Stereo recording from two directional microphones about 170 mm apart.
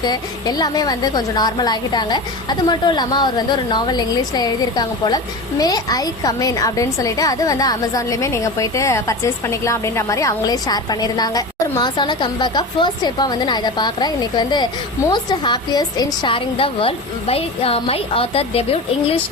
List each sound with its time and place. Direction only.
0.0 s a woman's voice: 25° left (ahead or behind)